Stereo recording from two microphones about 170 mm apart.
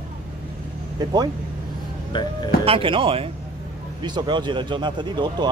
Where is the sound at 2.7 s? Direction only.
30° right (ahead or behind).